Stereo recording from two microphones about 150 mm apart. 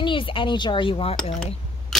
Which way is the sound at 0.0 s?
35° left (ahead or behind).